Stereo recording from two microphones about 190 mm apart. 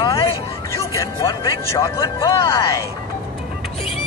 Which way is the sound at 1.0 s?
15° left (ahead or behind).